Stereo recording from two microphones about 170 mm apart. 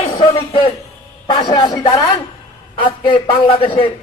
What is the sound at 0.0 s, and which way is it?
A man's voice, 30° left (ahead or behind).